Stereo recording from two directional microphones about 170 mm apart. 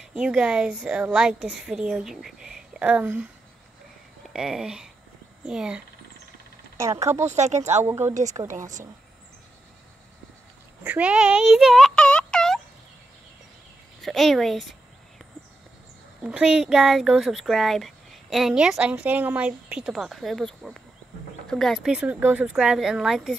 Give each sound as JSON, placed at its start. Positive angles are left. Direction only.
{"t": 0.0, "sound": "speech", "side_deg": -5}
{"t": 4.3, "sound": "speech", "side_deg": -5}
{"t": 7.2, "sound": "speech", "side_deg": -40}
{"t": 7.8, "sound": "speech", "side_deg": -15}
{"t": 10.8, "sound": "turkey", "side_deg": -10}
{"t": 14.0, "sound": "a sound", "side_deg": 0}
{"t": 16.2, "sound": "speech", "side_deg": -5}